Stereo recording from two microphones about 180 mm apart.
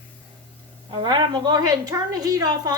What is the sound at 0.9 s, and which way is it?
A woman's voice, 25° right (ahead or behind).